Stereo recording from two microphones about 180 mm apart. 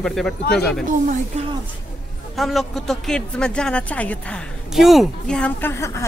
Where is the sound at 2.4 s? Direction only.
Centre (ahead or behind).